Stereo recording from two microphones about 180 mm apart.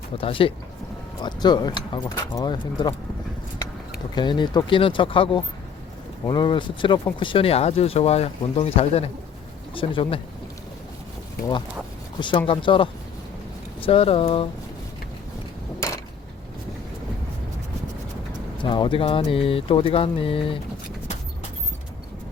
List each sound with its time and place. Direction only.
0.2 s speech: 30° left (ahead or behind)
4.1 s speech: 25° left (ahead or behind)
12.2 s speech: 25° left (ahead or behind)
18.6 s speech: 25° left (ahead or behind)